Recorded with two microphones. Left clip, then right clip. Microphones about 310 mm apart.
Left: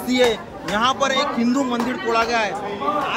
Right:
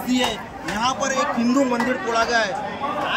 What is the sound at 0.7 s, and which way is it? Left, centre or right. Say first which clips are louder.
Speech: left 3 dB; centre.